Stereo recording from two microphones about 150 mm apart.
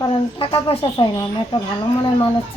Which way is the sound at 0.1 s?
35° left (ahead or behind).